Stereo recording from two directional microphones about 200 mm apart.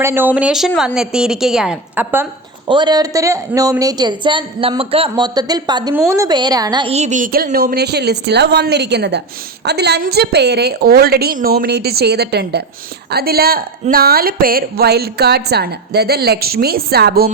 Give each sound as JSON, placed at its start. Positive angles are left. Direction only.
{"t": 0.0, "sound": "a woman's voice", "side_deg": -10}
{"t": 2.6, "sound": "a woman's voice", "side_deg": -20}